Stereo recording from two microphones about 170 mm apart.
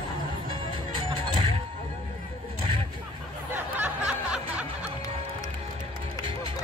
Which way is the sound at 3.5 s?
10° right (ahead or behind).